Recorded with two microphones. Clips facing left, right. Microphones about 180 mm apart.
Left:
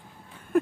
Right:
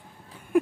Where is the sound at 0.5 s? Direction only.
10° right (ahead or behind).